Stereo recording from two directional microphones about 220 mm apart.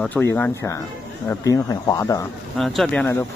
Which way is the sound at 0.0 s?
10° left (ahead or behind).